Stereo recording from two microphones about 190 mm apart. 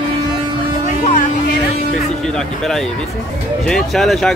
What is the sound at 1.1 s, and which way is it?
Speech, 50° left (ahead or behind).